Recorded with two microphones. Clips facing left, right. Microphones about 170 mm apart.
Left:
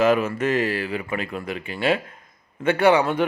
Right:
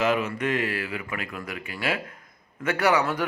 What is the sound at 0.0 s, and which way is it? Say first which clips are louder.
Speech: left 5 dB; 50° left (ahead or behind).